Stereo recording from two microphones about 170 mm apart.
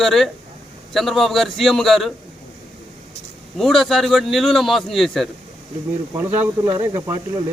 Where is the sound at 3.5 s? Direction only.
Centre (ahead or behind).